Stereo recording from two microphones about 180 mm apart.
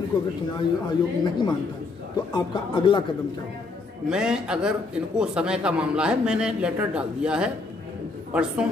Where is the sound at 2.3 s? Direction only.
25° left (ahead or behind).